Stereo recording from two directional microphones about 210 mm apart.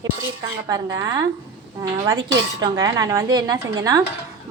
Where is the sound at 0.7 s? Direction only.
15° right (ahead or behind).